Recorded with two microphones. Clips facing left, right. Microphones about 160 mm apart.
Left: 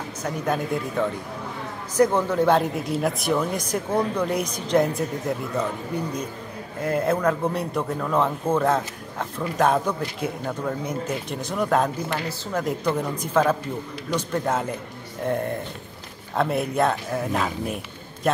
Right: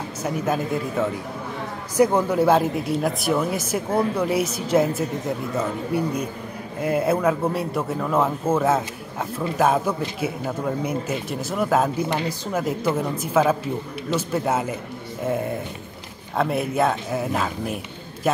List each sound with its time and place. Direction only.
0.2 s speech: 5° right (ahead or behind)
12.1 s a man's voice: 15° right (ahead or behind)